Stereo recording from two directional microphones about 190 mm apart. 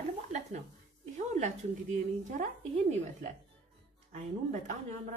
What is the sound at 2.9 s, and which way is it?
A woman's voice, 40° right (ahead or behind).